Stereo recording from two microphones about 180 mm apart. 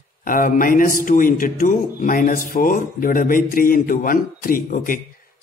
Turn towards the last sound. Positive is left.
turn(degrees=50)  # may be behind; listen again after turning